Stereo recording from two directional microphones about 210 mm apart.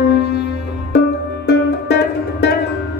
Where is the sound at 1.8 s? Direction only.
50° left (ahead or behind).